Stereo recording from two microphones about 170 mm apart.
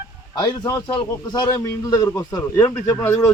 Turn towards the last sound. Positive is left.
turn(degrees=20)  # may be behind; listen again after turning